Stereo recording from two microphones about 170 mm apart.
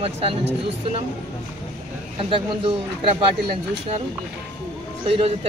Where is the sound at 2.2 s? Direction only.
30° right (ahead or behind).